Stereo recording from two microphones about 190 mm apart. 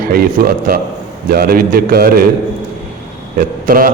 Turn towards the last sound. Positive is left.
turn(degrees=-50)  # may be behind; listen again after turning